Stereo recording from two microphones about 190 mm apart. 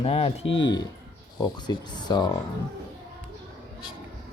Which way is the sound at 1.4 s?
20° left (ahead or behind).